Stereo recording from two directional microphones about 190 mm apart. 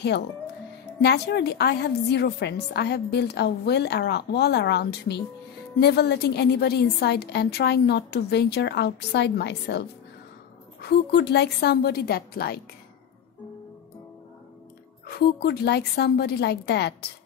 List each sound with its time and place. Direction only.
1.0 s a woman's voice: 60° left (ahead or behind)
15.0 s a woman's voice: 55° left (ahead or behind)